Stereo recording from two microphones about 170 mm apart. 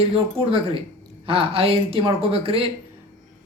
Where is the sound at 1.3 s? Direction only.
35° right (ahead or behind).